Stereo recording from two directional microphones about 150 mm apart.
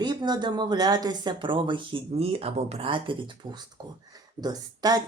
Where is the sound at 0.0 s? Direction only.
30° right (ahead or behind).